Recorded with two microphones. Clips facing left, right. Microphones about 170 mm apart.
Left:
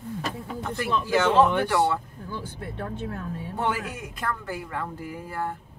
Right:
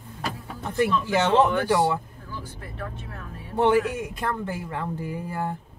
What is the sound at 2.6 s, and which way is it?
Speech, 30° left (ahead or behind).